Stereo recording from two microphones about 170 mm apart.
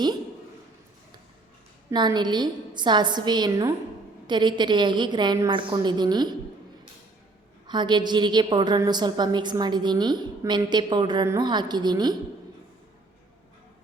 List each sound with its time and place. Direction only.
1.9 s a woman's voice: 25° right (ahead or behind)
7.7 s a woman's voice: 25° right (ahead or behind)